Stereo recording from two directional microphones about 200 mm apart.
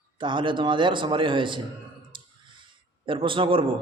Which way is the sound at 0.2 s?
25° right (ahead or behind).